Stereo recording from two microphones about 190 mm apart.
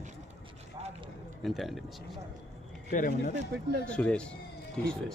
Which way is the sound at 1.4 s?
Centre (ahead or behind).